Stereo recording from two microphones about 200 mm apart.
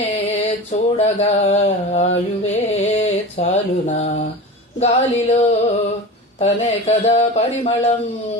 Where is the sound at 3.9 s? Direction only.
35° left (ahead or behind).